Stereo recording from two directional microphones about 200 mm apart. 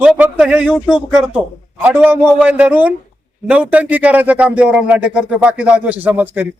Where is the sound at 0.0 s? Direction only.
5° right (ahead or behind).